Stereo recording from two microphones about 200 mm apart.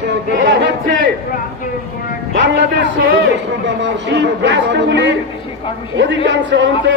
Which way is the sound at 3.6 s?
60° right (ahead or behind).